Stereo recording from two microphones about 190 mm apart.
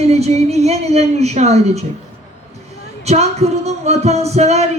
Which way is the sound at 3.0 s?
35° right (ahead or behind).